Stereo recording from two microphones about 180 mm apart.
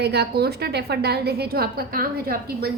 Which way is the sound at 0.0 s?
65° right (ahead or behind).